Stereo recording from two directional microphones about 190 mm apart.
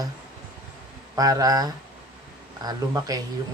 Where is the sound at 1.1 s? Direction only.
20° right (ahead or behind).